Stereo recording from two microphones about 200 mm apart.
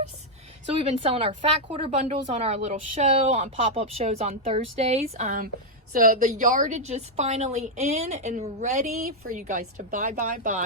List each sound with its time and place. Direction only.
0.8 s speech: 30° right (ahead or behind)
5.9 s speech: 45° right (ahead or behind)